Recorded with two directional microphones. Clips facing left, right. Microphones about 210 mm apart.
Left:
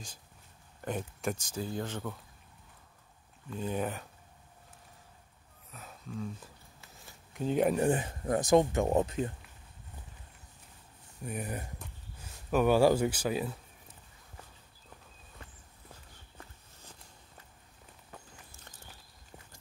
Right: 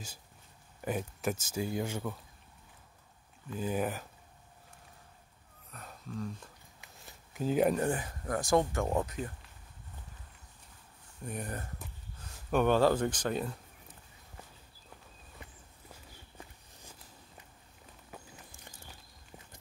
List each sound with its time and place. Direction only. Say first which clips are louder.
0.7 s speech: right 1 dB; 5° right (ahead or behind)
3.4 s speech: right 1 dB; 5° right (ahead or behind)
5.7 s a sound: even; centre (ahead or behind)
7.3 s speech: even; 5° right (ahead or behind)
7.9 s speech: left 4 dB; 25° left (ahead or behind)
11.2 s speech: left 1 dB; 5° left (ahead or behind)
18.1 s walk: right 2 dB; 10° right (ahead or behind)